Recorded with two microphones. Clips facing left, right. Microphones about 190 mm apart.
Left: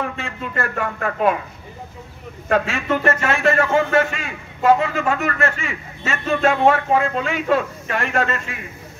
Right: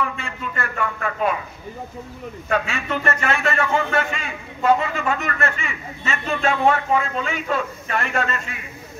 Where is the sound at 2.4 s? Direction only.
45° left (ahead or behind).